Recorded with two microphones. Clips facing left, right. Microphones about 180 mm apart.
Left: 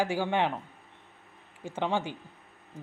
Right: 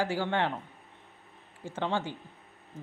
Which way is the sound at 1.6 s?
15° left (ahead or behind).